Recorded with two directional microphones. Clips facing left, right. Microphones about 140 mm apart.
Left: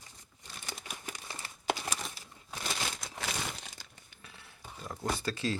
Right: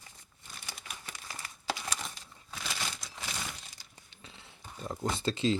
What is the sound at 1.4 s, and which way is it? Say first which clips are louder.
Crumpling: even; 30° left (ahead or behind).